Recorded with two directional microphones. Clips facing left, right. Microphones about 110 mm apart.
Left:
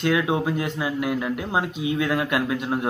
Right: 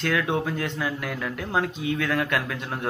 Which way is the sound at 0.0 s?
15° left (ahead or behind).